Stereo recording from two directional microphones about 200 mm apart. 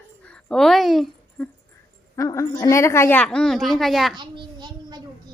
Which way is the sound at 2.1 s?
15° left (ahead or behind).